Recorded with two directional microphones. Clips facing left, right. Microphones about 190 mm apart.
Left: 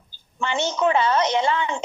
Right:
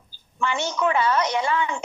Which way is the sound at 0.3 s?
25° left (ahead or behind).